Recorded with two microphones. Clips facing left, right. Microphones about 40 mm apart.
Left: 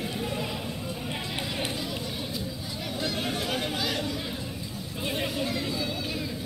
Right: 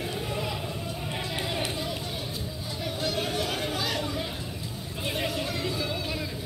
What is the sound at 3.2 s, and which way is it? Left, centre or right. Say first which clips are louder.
Chatter: right 1 dB; left.